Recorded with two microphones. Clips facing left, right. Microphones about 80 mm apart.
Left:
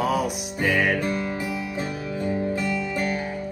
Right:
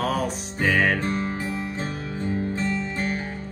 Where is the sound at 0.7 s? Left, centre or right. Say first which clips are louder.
Even; right.